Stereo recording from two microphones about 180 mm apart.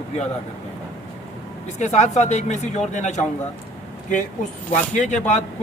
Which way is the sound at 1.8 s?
40° left (ahead or behind).